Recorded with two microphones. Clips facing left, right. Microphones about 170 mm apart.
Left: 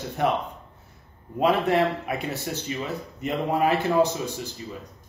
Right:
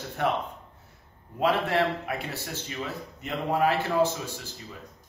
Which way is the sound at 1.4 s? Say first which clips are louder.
Left 4 dB; 15° left (ahead or behind).